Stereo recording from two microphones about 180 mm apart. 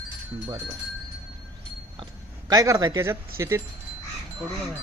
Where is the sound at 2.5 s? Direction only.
20° right (ahead or behind).